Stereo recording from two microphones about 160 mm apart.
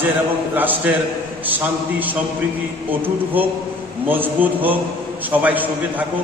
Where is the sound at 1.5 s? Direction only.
10° right (ahead or behind).